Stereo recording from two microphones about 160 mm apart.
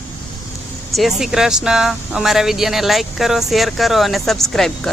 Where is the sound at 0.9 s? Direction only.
Centre (ahead or behind).